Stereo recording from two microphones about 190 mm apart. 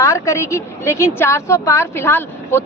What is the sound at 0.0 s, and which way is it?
A woman's voice, 15° left (ahead or behind).